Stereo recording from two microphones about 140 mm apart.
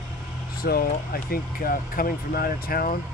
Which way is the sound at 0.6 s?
90° left.